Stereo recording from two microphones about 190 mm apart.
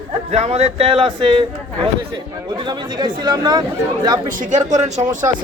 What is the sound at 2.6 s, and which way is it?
Speech, 20° right (ahead or behind).